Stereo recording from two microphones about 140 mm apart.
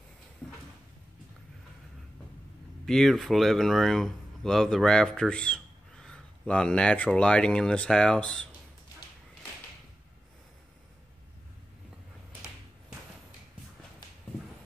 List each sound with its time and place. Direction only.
2.8 s speech: 5° left (ahead or behind)